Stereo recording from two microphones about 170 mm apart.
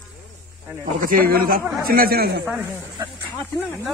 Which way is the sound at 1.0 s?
60° right (ahead or behind).